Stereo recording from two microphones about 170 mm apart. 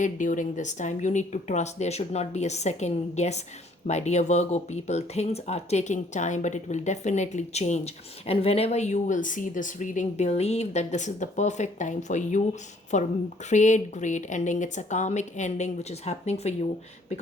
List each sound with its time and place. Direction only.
0.0 s speech: 50° left (ahead or behind)